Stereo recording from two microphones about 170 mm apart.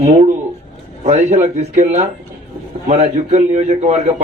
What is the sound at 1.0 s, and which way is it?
A man's voice, 45° right (ahead or behind).